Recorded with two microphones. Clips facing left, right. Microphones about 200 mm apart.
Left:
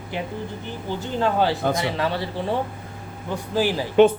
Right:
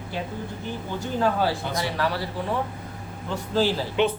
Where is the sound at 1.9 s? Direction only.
25° left (ahead or behind).